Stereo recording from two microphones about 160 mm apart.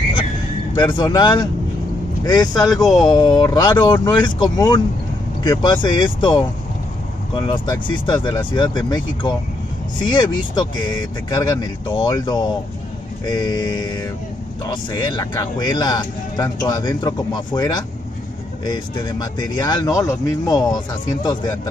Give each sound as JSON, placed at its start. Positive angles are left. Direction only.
{"t": 0.9, "sound": "speech", "side_deg": 25}